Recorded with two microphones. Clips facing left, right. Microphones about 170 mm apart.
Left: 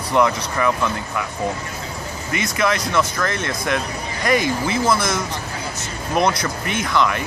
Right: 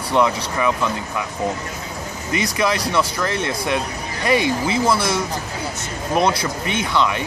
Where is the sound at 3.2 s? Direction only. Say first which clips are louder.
Right 1 dB; 10° right (ahead or behind).